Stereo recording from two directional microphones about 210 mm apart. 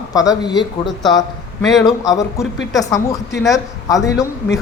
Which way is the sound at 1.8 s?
15° left (ahead or behind).